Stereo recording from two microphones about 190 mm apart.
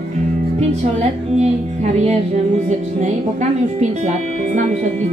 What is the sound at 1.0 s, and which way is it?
Speech, 35° right (ahead or behind).